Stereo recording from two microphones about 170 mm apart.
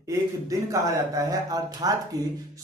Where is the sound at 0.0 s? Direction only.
20° right (ahead or behind).